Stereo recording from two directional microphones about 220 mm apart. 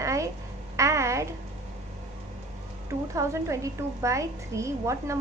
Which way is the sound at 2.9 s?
15° right (ahead or behind).